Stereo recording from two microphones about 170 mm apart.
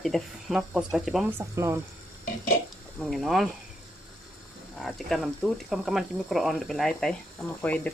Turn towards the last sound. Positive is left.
turn(degrees=10)  # may be behind; listen again after turning